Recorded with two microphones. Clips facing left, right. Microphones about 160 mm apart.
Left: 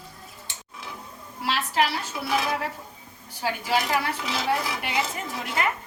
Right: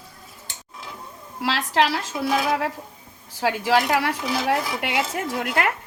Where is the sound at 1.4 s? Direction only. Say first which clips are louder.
Right 3 dB; 90° right.